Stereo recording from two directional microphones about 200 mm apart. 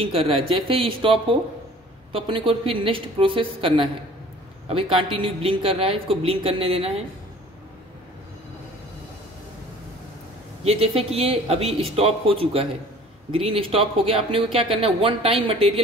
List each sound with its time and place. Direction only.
0.0 s speech: 30° right (ahead or behind)
10.6 s speech: 30° right (ahead or behind)